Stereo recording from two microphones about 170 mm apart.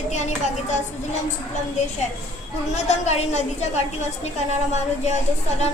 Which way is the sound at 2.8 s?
40° left (ahead or behind).